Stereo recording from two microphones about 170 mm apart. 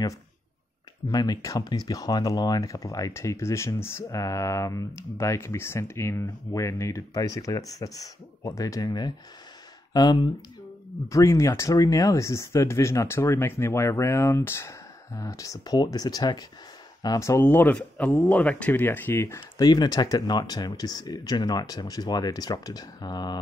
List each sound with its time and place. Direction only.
1.1 s speech: 20° left (ahead or behind)
11.1 s speech: 20° left (ahead or behind)